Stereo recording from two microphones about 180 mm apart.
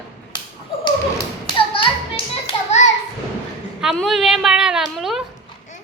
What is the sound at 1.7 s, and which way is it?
Children playing, 30° left (ahead or behind).